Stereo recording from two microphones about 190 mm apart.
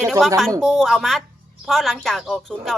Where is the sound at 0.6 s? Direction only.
Centre (ahead or behind).